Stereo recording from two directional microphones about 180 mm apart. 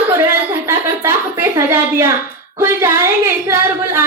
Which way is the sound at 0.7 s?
15° right (ahead or behind).